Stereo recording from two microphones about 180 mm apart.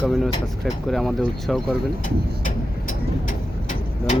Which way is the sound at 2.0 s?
45° left (ahead or behind).